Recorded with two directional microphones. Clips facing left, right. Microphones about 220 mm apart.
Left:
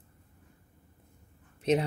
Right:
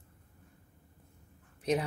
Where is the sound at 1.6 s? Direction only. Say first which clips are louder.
Left 4 dB; 25° left (ahead or behind).